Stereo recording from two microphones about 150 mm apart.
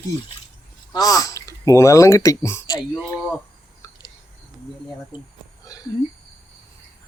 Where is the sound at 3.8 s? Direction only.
25° left (ahead or behind).